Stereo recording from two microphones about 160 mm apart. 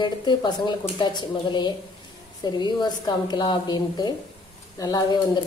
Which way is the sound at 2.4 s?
25° left (ahead or behind).